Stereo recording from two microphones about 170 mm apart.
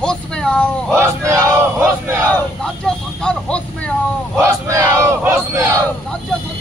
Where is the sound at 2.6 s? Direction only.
5° left (ahead or behind).